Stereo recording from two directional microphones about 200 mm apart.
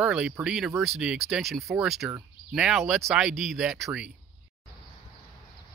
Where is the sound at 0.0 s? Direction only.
5° right (ahead or behind).